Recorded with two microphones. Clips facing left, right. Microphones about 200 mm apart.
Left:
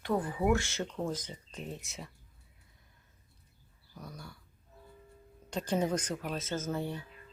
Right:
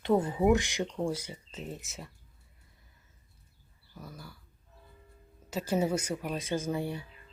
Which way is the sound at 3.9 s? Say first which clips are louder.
Even; centre (ahead or behind).